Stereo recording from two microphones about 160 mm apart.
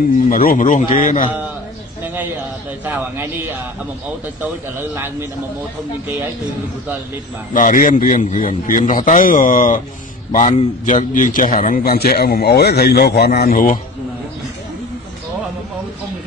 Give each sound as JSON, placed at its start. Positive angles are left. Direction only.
{"t": 0.3, "sound": "a man's voice", "side_deg": 60}
{"t": 2.8, "sound": "speech", "side_deg": -10}
{"t": 7.5, "sound": "a man's voice", "side_deg": 55}